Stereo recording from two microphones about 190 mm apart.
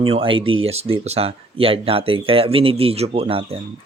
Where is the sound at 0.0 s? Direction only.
30° right (ahead or behind).